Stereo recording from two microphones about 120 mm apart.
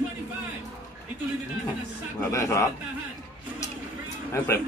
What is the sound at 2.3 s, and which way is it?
Speech, 25° left (ahead or behind).